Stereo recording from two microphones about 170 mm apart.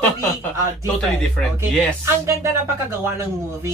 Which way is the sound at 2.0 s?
15° right (ahead or behind).